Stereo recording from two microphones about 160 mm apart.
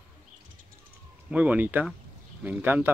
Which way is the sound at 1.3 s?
10° right (ahead or behind).